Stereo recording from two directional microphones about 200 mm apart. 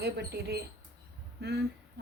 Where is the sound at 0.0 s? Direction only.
55° right (ahead or behind).